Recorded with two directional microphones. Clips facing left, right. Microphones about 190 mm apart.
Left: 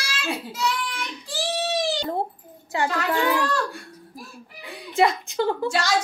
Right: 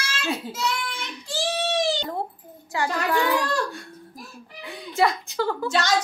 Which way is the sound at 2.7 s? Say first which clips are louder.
Even; 25° left (ahead or behind).